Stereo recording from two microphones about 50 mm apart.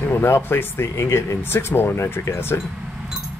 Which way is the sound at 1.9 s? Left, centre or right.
Left.